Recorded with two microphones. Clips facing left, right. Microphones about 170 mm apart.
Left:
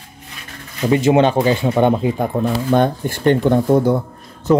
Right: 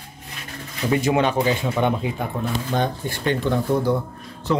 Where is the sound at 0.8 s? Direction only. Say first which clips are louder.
Left 6 dB; 25° left (ahead or behind).